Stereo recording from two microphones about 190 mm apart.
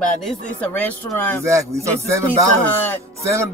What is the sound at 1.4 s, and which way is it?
Speech, 15° right (ahead or behind).